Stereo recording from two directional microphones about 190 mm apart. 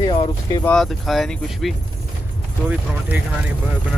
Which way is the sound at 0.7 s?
Centre (ahead or behind).